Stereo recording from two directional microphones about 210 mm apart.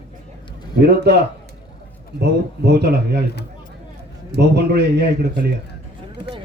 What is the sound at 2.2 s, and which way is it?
Speech, 50° right (ahead or behind).